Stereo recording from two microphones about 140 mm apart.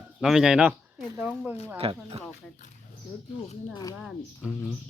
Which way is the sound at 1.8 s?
45° right (ahead or behind).